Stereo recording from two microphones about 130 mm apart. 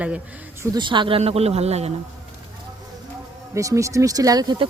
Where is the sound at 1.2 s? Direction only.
50° right (ahead or behind).